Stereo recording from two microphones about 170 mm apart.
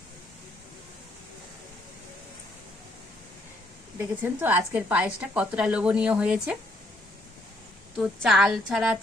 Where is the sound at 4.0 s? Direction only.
10° right (ahead or behind).